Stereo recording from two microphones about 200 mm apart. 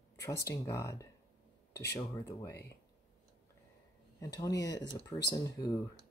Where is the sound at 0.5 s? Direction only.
15° left (ahead or behind).